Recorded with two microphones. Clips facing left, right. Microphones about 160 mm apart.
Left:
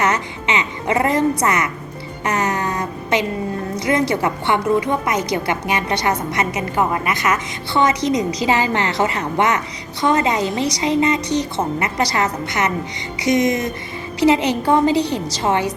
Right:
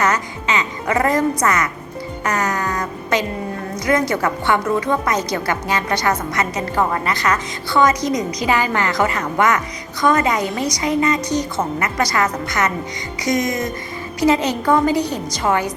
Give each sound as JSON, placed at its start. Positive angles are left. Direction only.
{"t": 0.0, "sound": "a woman's voice", "side_deg": 25}
{"t": 2.2, "sound": "a sound", "side_deg": 25}
{"t": 3.8, "sound": "a woman's voice", "side_deg": 25}